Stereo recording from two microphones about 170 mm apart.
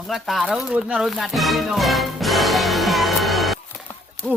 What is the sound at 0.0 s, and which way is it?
Speech, centre (ahead or behind).